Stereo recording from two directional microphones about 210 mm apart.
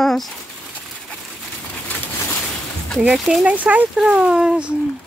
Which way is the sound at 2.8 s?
Centre (ahead or behind).